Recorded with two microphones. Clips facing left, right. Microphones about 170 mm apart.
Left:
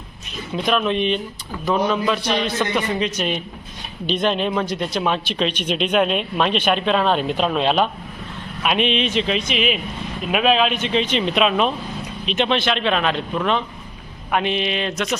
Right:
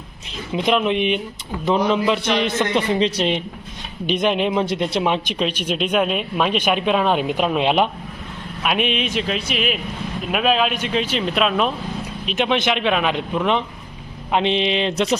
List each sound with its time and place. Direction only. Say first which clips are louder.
0.5 s a man's voice: right 2 dB; 20° right (ahead or behind)